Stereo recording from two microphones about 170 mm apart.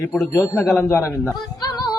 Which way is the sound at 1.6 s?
25° left (ahead or behind).